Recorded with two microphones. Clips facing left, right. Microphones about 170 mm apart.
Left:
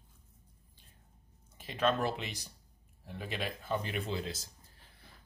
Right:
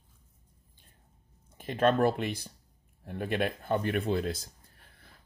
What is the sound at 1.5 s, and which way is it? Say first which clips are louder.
Speech: right 5 dB; 50° right (ahead or behind).